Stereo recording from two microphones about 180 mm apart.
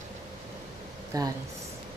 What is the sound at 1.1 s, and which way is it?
Speech, 20° right (ahead or behind).